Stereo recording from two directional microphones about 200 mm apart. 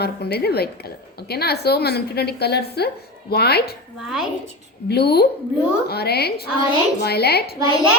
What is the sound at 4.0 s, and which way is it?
Speech, 5° right (ahead or behind).